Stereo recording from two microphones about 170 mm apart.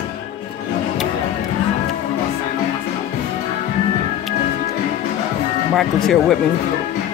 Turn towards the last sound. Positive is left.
turn(degrees=0)  # may be behind; listen again after turning